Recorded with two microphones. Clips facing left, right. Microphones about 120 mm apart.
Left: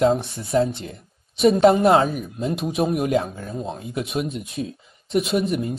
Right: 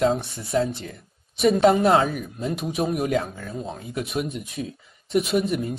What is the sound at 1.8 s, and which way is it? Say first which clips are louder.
Speech: left 2 dB; 25° left (ahead or behind).